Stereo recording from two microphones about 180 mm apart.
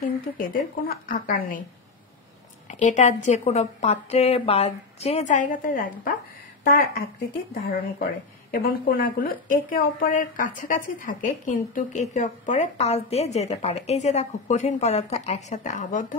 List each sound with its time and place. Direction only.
0.4 s speech: 50° left (ahead or behind)
2.7 s a woman's voice: 40° left (ahead or behind)